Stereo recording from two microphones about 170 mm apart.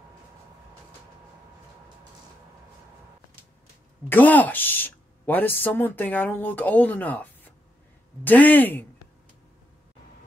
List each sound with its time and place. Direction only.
4.1 s speech: 10° left (ahead or behind)